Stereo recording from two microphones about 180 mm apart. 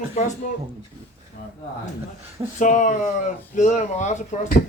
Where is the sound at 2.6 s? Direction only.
45° left (ahead or behind).